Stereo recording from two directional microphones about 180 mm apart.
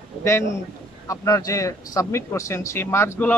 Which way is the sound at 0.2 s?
15° left (ahead or behind).